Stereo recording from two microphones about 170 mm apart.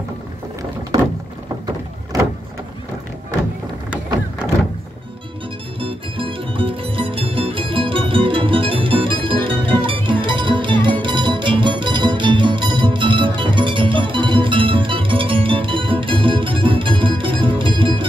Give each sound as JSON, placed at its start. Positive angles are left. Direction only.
{"t": 5.8, "sound": "music", "side_deg": -30}